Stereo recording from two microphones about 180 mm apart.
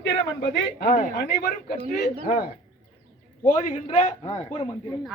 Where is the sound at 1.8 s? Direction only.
65° left (ahead or behind).